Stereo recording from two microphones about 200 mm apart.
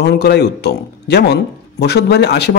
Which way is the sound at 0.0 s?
55° left (ahead or behind).